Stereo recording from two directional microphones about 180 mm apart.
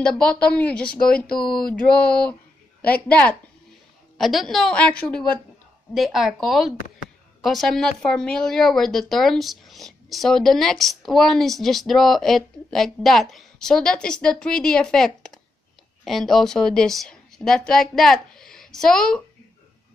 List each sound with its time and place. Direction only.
0.0 s speech: 5° left (ahead or behind)
1.0 s speech: 55° left (ahead or behind)
1.7 s a woman's voice: 5° left (ahead or behind)